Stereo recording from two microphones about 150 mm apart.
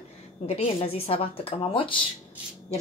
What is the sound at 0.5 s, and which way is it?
Speech, 40° left (ahead or behind).